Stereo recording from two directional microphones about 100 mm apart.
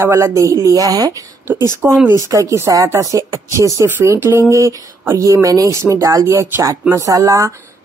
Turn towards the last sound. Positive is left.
turn(degrees=-30)  # may be behind; listen again after turning